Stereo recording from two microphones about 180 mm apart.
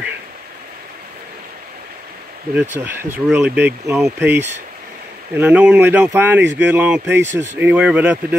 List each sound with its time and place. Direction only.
2.5 s speech: 10° right (ahead or behind)
5.3 s speech: 10° right (ahead or behind)
6.4 s speech: 75° right (ahead or behind)
6.7 s speech: 10° right (ahead or behind)